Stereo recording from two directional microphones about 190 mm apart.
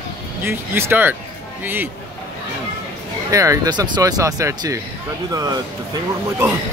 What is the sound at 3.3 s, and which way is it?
Speech, 15° right (ahead or behind).